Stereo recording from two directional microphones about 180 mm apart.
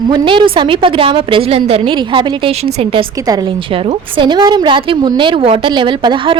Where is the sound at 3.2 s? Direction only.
20° right (ahead or behind).